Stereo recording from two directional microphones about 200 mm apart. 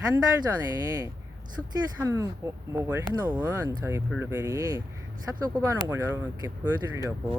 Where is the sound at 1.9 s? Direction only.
15° right (ahead or behind).